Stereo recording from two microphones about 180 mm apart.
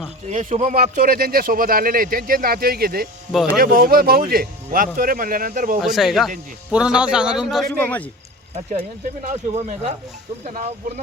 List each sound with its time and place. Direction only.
0.3 s speech: 40° right (ahead or behind)
5.8 s a man's voice: centre (ahead or behind)
7.8 s a man's voice: 10° left (ahead or behind)
9.2 s speech: 40° right (ahead or behind)